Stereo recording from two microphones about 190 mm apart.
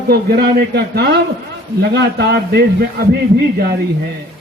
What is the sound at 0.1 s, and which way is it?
A man's voice, 55° right (ahead or behind).